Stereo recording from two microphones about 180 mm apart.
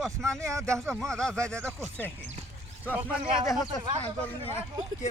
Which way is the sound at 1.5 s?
15° right (ahead or behind).